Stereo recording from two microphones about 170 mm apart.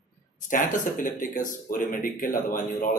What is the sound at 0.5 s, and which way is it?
Speech, 50° left (ahead or behind).